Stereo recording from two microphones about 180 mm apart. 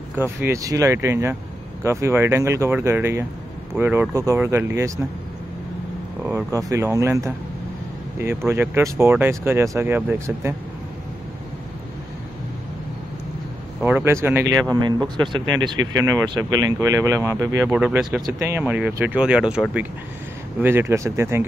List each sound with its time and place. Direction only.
0.1 s speech: 15° right (ahead or behind)
6.2 s speech: 15° right (ahead or behind)
13.7 s speech: 10° right (ahead or behind)
17.6 s speech: 5° right (ahead or behind)